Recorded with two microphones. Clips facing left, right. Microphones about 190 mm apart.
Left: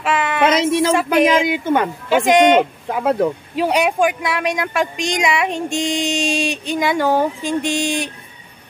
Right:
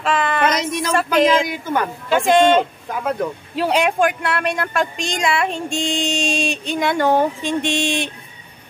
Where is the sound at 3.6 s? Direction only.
10° left (ahead or behind).